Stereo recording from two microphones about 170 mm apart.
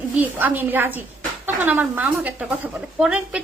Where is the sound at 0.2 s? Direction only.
10° right (ahead or behind).